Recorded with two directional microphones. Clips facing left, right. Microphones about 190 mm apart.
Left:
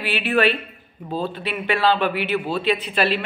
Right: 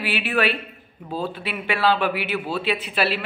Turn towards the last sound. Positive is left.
turn(degrees=-5)  # may be behind; listen again after turning